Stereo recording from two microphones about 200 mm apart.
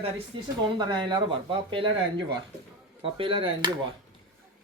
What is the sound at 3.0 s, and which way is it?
Speech, 25° right (ahead or behind).